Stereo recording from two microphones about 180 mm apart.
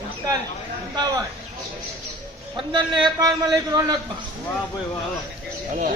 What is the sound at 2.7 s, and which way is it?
A man's voice, 25° right (ahead or behind).